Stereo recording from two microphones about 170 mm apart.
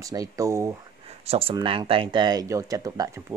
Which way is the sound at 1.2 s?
35° right (ahead or behind).